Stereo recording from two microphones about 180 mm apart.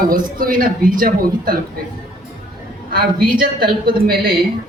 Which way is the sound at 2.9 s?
55° right (ahead or behind).